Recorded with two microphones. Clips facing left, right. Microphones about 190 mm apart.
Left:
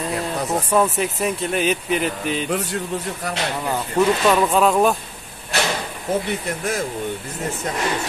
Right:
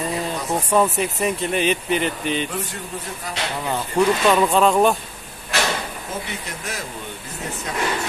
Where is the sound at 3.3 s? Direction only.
60° left (ahead or behind).